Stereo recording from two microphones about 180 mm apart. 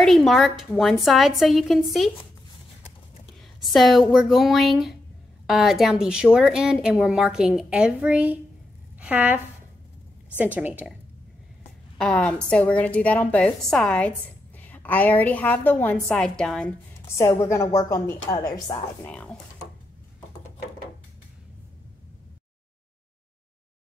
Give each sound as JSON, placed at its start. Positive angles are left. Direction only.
{"t": 0.0, "sound": "a woman's voice", "side_deg": 0}
{"t": 3.3, "sound": "a woman's voice", "side_deg": 0}
{"t": 12.0, "sound": "a woman's voice", "side_deg": 5}
{"t": 17.0, "sound": "a woman's voice", "side_deg": 15}
{"t": 19.0, "sound": "speech", "side_deg": 5}